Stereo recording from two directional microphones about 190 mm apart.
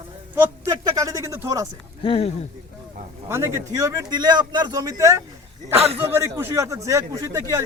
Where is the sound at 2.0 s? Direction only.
30° left (ahead or behind).